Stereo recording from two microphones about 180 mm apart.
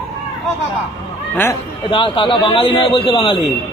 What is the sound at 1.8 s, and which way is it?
A man's voice, 30° left (ahead or behind).